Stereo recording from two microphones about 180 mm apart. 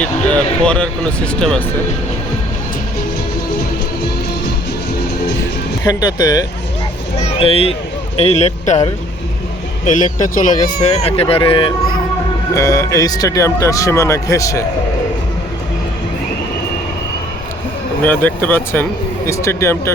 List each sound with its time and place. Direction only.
0.0 s speech: 5° left (ahead or behind)
5.8 s speech: 20° left (ahead or behind)
7.3 s speech: 30° left (ahead or behind)
9.8 s speech: 45° left (ahead or behind); by 11.7 s 30° left (ahead or behind)
12.5 s speech: 15° left (ahead or behind)
18.0 s speech: 10° left (ahead or behind)